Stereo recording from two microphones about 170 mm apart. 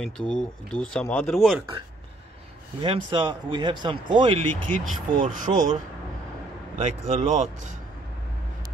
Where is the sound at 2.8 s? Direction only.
30° right (ahead or behind).